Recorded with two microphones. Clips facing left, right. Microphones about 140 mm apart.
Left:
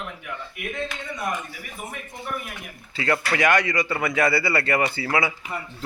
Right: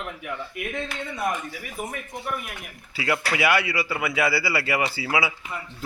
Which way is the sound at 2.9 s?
10° right (ahead or behind).